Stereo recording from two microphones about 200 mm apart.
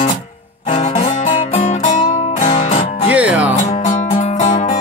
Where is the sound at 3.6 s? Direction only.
35° left (ahead or behind).